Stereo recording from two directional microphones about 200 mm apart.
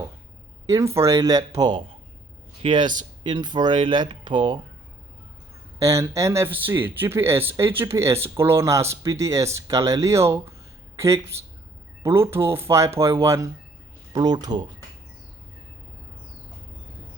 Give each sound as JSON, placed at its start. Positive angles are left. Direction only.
{"t": 0.7, "sound": "a man's voice", "side_deg": -15}
{"t": 5.8, "sound": "a man's voice", "side_deg": -15}